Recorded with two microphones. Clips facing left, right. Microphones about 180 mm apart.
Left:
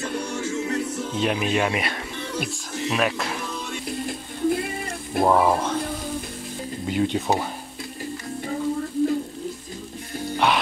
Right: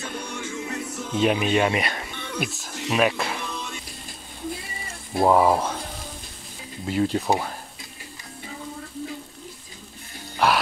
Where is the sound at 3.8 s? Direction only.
60° left (ahead or behind).